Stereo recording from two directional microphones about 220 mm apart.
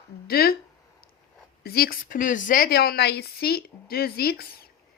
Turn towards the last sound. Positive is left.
turn(degrees=45)  # may be behind; listen again after turning